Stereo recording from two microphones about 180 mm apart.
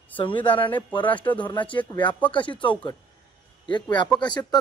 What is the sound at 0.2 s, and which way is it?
Speech, 30° left (ahead or behind).